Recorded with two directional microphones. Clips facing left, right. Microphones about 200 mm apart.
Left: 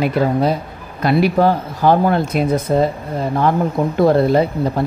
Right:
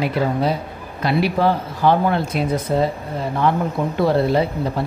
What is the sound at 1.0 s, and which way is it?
Speech, 45° left (ahead or behind).